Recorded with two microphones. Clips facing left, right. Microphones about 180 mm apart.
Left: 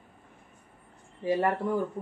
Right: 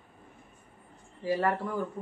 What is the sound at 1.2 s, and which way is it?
Speech, 20° left (ahead or behind).